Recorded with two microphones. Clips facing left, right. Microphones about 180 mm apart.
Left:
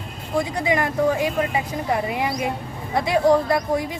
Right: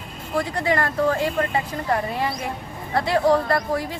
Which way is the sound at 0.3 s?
15° left (ahead or behind).